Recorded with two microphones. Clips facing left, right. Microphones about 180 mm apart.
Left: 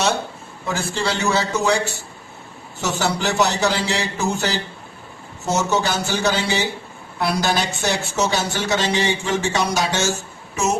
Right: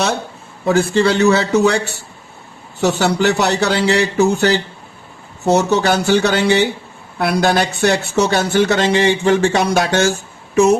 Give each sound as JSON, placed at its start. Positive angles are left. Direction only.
{"t": 0.7, "sound": "speech", "side_deg": -60}
{"t": 2.8, "sound": "speech", "side_deg": -65}